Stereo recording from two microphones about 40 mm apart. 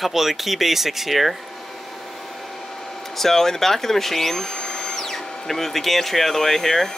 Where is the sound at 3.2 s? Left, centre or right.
Centre.